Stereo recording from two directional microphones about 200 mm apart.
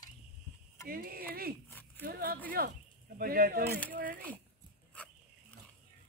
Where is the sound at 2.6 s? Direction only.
50° right (ahead or behind).